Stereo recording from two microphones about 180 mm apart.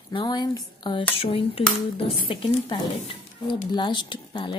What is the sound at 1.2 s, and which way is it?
Dishes, 30° left (ahead or behind).